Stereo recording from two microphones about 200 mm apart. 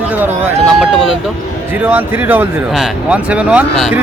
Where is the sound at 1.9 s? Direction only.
10° right (ahead or behind).